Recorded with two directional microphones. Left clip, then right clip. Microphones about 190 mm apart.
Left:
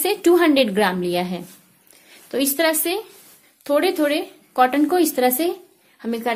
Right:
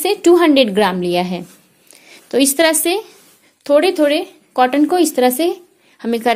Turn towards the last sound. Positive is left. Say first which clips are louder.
# right 7 dB
turn(degrees=-40)  # may be behind; listen again after turning